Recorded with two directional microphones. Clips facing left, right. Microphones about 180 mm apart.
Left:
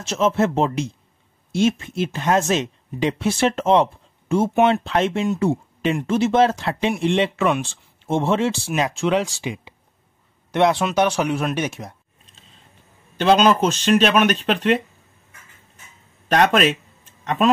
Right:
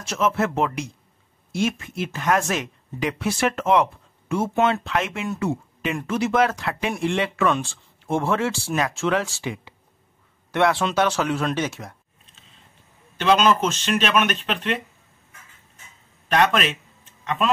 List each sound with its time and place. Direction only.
0.0 s speech: 25° left (ahead or behind)
13.2 s speech: 35° left (ahead or behind)
16.3 s speech: 40° left (ahead or behind)
17.2 s tick-tock: 45° left (ahead or behind)